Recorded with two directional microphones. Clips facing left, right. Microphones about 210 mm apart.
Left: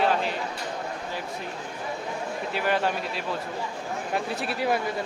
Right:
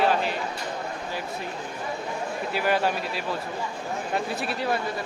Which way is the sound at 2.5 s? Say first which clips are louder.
Right 1 dB; 5° right (ahead or behind).